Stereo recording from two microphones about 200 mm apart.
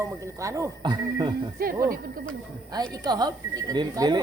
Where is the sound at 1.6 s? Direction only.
45° right (ahead or behind).